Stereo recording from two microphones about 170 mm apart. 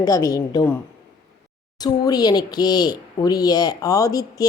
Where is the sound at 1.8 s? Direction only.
25° left (ahead or behind).